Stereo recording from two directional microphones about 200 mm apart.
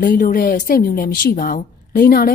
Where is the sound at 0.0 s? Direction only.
45° left (ahead or behind).